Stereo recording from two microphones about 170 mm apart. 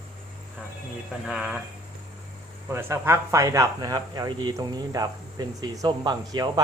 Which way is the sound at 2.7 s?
15° right (ahead or behind).